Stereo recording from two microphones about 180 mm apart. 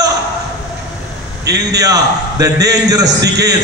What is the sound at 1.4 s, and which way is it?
Speech, 65° right (ahead or behind).